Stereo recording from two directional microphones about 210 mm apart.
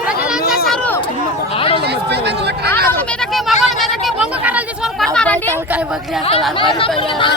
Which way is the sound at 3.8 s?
Centre (ahead or behind).